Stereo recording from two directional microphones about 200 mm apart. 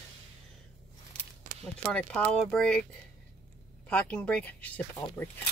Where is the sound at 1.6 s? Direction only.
5° left (ahead or behind).